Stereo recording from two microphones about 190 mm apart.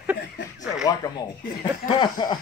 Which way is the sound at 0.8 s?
20° left (ahead or behind).